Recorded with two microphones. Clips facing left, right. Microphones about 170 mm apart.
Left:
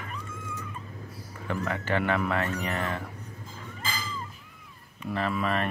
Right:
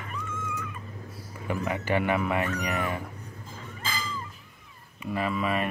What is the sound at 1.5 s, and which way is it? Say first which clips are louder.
Speech: right 1 dB; 10° right (ahead or behind).